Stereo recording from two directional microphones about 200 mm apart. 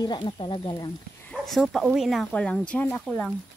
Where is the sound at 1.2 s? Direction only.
Centre (ahead or behind).